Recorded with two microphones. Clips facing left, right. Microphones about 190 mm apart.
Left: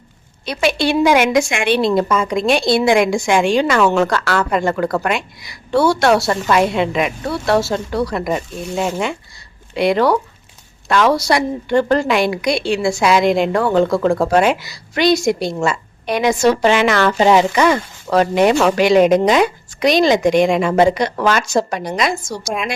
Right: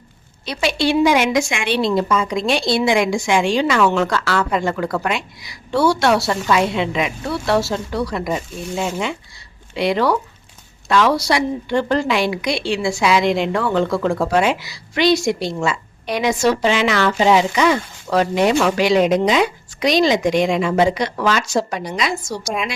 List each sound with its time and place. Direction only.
0.4 s a woman's voice: 55° left (ahead or behind)
22.3 s a woman's voice: centre (ahead or behind)